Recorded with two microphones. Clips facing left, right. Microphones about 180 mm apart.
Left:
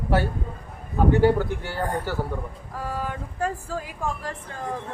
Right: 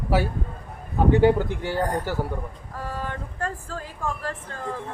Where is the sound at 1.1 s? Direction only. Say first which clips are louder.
Right 1 dB; 15° right (ahead or behind).